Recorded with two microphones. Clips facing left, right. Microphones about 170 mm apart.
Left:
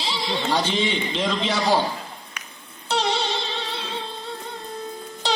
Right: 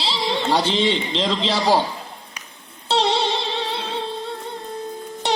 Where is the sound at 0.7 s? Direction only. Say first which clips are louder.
Right 3 dB; 90° right.